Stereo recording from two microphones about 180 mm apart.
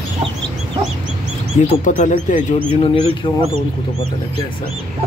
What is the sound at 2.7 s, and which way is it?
Speech, 30° left (ahead or behind).